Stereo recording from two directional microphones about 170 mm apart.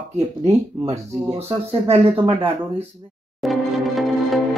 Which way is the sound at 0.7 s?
25° right (ahead or behind).